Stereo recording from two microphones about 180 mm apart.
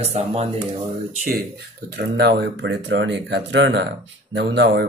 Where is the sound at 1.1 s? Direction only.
60° right (ahead or behind).